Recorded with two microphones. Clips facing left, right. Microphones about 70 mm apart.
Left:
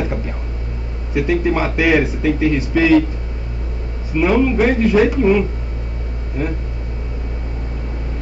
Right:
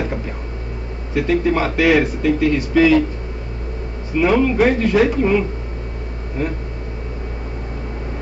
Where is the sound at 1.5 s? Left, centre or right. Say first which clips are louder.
Right 1 dB; centre.